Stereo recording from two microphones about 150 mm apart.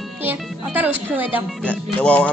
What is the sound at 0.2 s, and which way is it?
Speech, 10° right (ahead or behind).